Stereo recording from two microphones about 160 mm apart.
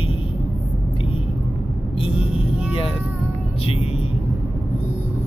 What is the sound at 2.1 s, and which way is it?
Speech, 5° right (ahead or behind).